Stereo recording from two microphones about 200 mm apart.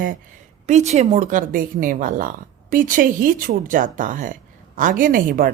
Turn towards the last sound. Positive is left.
turn(degrees=-45)  # may be behind; listen again after turning